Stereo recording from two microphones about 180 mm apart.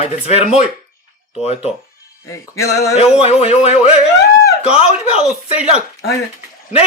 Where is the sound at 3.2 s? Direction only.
35° left (ahead or behind).